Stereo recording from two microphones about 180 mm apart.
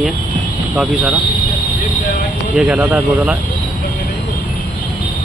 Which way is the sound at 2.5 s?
Centre (ahead or behind).